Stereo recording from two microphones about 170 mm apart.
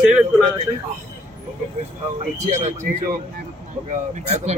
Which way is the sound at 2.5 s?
45° right (ahead or behind).